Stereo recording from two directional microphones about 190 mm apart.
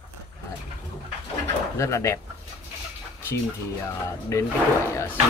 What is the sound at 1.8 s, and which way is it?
Speech, 15° left (ahead or behind).